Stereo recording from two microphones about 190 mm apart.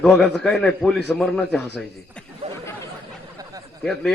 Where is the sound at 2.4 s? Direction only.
35° right (ahead or behind).